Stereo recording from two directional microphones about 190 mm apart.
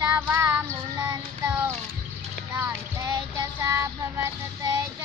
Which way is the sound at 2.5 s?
15° right (ahead or behind).